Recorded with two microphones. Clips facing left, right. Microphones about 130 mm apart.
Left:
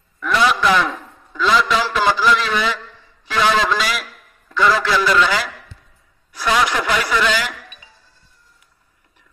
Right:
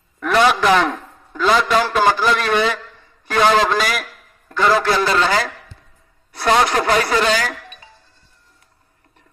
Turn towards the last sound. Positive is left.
turn(degrees=-40)  # may be behind; listen again after turning